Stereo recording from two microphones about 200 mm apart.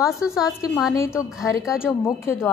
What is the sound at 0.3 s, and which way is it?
Speech, 15° left (ahead or behind).